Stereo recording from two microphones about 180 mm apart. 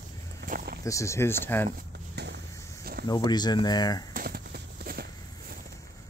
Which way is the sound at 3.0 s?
25° left (ahead or behind).